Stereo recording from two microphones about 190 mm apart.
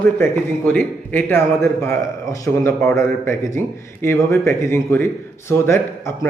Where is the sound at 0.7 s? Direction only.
10° left (ahead or behind).